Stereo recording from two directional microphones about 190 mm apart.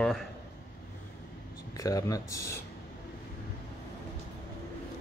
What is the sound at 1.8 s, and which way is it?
Speech, 20° left (ahead or behind).